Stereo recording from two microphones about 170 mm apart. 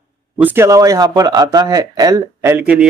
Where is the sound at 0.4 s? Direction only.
10° right (ahead or behind).